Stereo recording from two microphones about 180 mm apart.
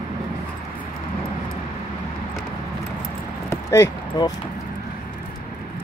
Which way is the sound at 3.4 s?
15° left (ahead or behind).